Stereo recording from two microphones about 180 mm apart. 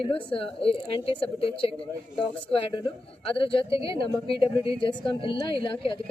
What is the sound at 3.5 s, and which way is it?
A woman's voice, 30° left (ahead or behind).